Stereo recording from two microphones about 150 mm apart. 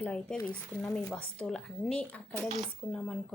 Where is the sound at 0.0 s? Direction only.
10° left (ahead or behind).